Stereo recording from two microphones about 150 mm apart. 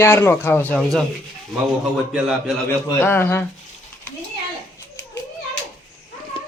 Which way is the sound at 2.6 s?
15° left (ahead or behind).